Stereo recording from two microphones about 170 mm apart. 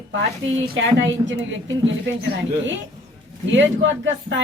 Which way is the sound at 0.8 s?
90° right.